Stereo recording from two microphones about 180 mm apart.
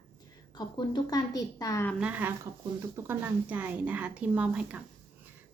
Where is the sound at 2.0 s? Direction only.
10° right (ahead or behind).